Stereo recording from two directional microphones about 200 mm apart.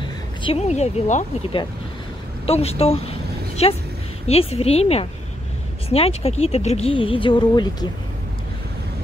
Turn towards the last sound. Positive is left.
turn(degrees=20)  # may be behind; listen again after turning